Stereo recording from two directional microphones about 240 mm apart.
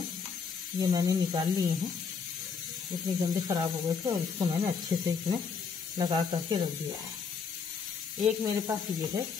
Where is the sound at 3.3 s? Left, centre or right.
Centre.